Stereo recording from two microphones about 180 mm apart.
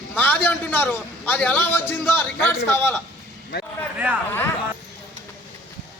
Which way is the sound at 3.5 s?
65° left (ahead or behind).